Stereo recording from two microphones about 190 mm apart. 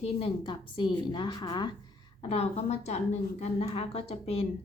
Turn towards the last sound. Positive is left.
turn(degrees=30)  # may be behind; listen again after turning